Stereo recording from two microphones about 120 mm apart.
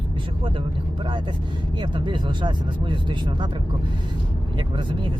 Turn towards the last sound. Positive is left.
turn(degrees=-40)  # may be behind; listen again after turning